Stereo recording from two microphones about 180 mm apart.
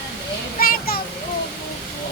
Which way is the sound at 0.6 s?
55° left (ahead or behind).